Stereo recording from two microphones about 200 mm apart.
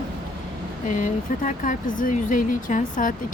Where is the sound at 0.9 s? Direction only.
40° left (ahead or behind).